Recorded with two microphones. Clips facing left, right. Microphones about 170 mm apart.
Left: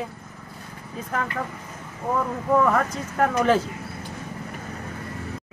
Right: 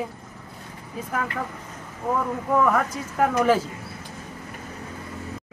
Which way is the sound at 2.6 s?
Centre (ahead or behind).